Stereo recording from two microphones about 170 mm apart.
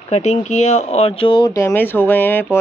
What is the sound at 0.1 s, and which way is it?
Speech, 40° left (ahead or behind).